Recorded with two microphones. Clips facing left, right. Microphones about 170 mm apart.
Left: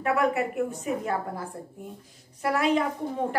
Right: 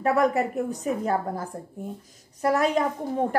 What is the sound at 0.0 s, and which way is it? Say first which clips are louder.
A woman's voice: right 3 dB; 35° right (ahead or behind).